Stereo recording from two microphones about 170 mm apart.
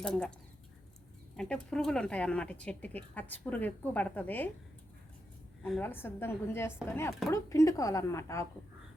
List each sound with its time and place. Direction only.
0.0 s speech: 5° left (ahead or behind)
1.4 s speech: 5° left (ahead or behind)
5.8 s speech: 10° left (ahead or behind)